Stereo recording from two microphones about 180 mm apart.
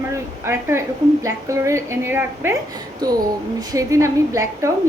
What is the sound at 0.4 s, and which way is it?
A woman's voice, 15° right (ahead or behind).